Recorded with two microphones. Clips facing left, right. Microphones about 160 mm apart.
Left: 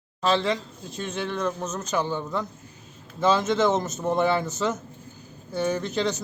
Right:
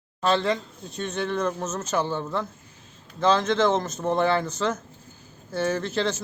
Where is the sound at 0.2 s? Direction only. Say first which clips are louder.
Even; centre (ahead or behind).